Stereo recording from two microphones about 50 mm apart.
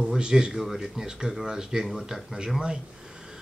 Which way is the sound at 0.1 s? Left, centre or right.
Centre.